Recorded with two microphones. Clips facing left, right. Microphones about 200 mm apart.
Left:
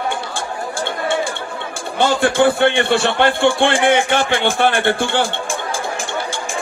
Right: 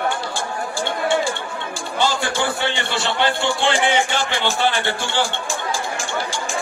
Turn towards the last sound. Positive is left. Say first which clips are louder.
# left 6 dB
turn(degrees=55)  # may be behind; listen again after turning